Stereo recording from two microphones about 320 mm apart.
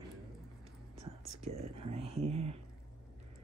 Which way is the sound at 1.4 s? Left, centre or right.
Centre.